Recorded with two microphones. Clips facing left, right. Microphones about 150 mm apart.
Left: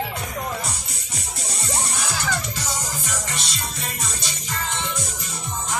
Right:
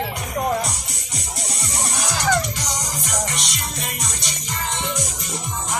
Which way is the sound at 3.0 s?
15° right (ahead or behind).